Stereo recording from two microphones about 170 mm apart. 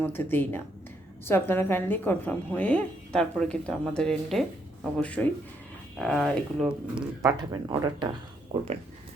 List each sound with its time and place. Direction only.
0.0 s a woman's voice: 10° left (ahead or behind); by 7.0 s 5° right (ahead or behind)
7.2 s speech: 20° right (ahead or behind)